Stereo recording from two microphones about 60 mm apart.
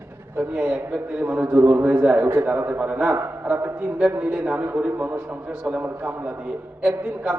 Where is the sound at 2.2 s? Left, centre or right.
Right.